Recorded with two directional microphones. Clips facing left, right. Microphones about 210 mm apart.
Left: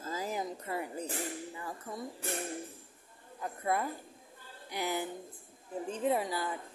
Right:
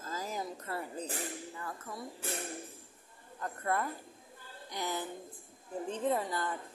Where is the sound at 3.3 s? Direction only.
10° left (ahead or behind).